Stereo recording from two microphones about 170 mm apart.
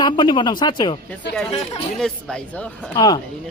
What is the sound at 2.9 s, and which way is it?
Speech, 25° left (ahead or behind).